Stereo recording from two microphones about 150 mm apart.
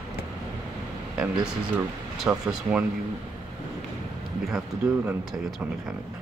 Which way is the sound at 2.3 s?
10° right (ahead or behind).